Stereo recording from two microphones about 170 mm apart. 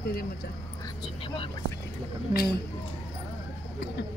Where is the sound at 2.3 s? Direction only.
65° left (ahead or behind).